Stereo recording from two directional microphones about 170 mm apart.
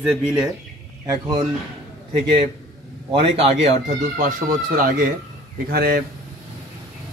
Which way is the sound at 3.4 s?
40° right (ahead or behind).